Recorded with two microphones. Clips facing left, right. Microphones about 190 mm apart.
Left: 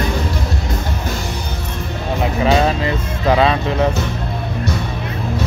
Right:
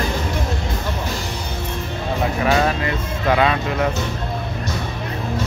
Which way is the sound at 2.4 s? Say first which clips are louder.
Left 4 dB; 25° left (ahead or behind).